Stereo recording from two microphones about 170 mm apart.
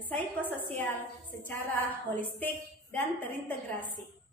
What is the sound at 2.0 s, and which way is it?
A woman's voice, 10° left (ahead or behind).